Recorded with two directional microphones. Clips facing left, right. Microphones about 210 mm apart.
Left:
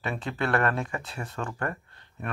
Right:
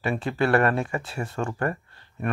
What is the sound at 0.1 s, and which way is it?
Speech, 10° right (ahead or behind).